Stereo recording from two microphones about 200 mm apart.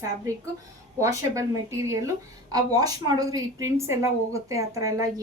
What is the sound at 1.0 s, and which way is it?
A woman's voice, 15° right (ahead or behind).